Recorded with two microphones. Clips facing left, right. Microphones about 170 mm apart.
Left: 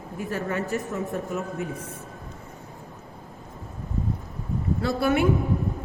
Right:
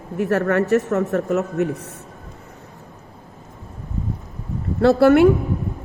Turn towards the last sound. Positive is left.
turn(degrees=-70)  # may be behind; listen again after turning